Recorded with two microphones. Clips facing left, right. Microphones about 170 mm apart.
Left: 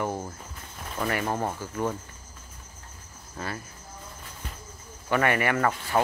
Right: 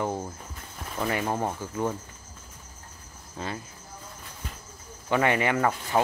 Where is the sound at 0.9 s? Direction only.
10° right (ahead or behind).